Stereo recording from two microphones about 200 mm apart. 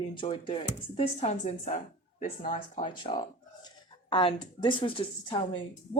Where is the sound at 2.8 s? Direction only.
25° left (ahead or behind).